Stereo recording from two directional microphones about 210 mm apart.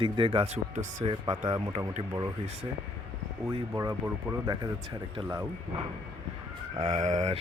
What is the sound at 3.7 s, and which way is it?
Speech, 15° right (ahead or behind).